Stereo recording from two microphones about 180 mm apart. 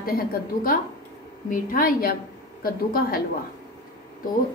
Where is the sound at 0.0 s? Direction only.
55° left (ahead or behind).